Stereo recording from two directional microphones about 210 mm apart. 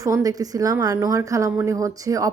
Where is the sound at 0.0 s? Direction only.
15° right (ahead or behind).